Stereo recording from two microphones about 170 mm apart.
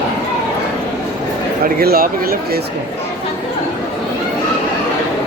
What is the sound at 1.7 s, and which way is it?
Speech, 60° right (ahead or behind).